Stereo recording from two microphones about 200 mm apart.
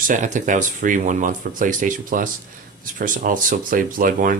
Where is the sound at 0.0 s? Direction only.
40° right (ahead or behind).